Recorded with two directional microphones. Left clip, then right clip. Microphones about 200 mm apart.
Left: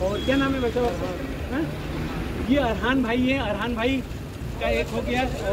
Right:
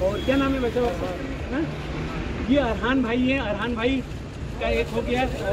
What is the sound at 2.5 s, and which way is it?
Speech, 5° left (ahead or behind).